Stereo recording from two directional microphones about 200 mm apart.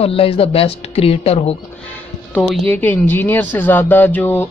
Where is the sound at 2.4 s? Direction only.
10° left (ahead or behind).